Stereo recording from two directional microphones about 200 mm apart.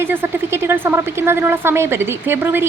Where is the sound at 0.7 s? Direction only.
10° right (ahead or behind).